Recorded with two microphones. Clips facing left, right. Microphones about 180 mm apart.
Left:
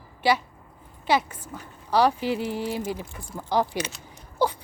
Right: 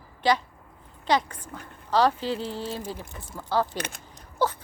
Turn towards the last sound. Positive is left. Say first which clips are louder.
# left 2 dB
turn(degrees=10)  # may be behind; listen again after turning